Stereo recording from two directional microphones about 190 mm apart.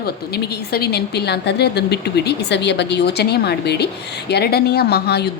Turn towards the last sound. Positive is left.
turn(degrees=60)  # may be behind; listen again after turning